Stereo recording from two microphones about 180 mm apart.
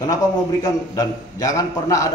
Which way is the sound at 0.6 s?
20° left (ahead or behind).